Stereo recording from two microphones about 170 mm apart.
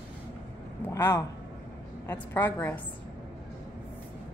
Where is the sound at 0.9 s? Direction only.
15° left (ahead or behind).